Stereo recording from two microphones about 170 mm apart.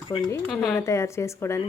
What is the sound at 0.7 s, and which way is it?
Speech, 15° left (ahead or behind).